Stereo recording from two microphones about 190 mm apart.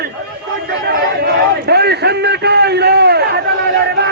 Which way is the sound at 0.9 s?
60° right (ahead or behind).